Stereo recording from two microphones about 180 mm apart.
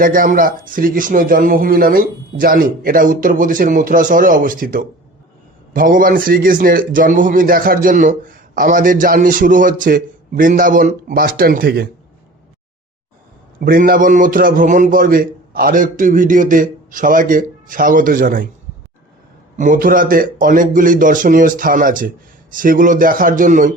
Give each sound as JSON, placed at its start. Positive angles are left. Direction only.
{"t": 0.0, "sound": "a man's voice", "side_deg": -50}
{"t": 13.6, "sound": "a man's voice", "side_deg": -55}
{"t": 19.5, "sound": "a man's voice", "side_deg": -45}